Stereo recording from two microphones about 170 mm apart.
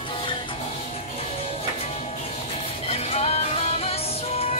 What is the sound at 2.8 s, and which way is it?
Music, 40° left (ahead or behind).